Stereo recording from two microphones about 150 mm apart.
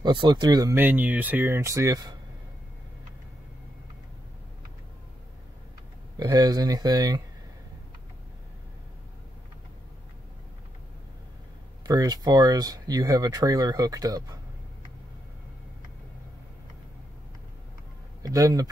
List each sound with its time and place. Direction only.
0.0 s speech: 30° right (ahead or behind)
0.7 s speech: 10° right (ahead or behind)
6.1 s speech: 25° right (ahead or behind)
11.9 s speech: 25° right (ahead or behind)
18.2 s speech: 25° right (ahead or behind)